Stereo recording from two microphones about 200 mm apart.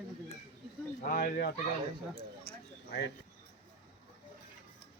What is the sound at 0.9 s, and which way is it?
Speech, 45° left (ahead or behind).